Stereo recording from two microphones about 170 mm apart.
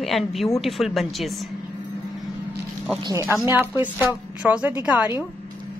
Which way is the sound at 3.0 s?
15° right (ahead or behind).